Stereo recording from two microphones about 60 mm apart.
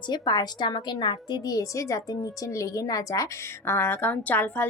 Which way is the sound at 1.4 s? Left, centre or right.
Left.